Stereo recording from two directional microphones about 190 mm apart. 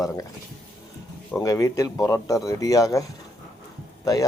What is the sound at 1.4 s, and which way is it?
Speech, 15° left (ahead or behind).